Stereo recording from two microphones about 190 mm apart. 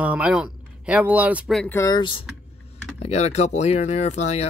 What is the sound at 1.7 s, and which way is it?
Speech, 20° left (ahead or behind).